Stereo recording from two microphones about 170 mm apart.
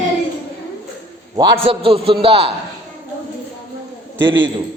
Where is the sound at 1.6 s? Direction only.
35° right (ahead or behind).